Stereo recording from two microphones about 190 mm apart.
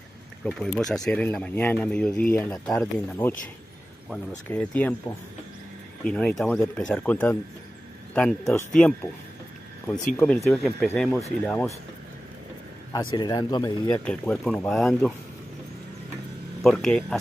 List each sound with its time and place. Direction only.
0.5 s speech: centre (ahead or behind)
4.5 s speech: 10° left (ahead or behind)
6.1 s speech: 5° left (ahead or behind)
12.9 s speech: 20° left (ahead or behind)
13.9 s speech: 5° left (ahead or behind)
16.6 s speech: centre (ahead or behind)